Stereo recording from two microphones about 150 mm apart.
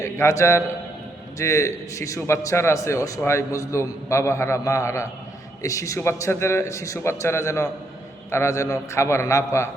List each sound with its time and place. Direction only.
0.0 s a man's voice: 20° left (ahead or behind)